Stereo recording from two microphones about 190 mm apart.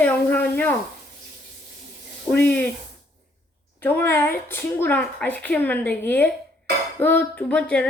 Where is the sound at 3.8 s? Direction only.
10° left (ahead or behind).